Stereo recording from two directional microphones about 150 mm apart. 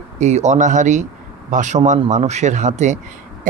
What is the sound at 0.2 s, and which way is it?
Speech, 50° right (ahead or behind).